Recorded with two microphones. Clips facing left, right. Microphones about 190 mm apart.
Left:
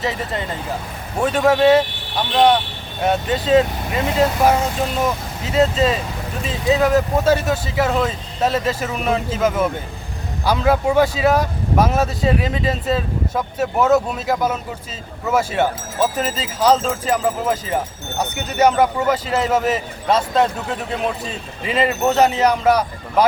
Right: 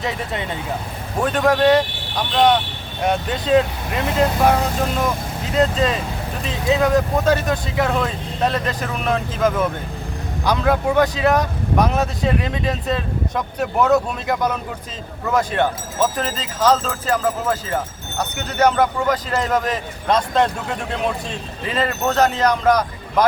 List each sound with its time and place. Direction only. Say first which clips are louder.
0.0 s speech: left 1 dB; centre (ahead or behind)
5.5 s a man's voice: left 2 dB; 5° left (ahead or behind)